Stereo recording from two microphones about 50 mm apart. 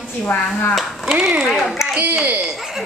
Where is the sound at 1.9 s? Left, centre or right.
Right.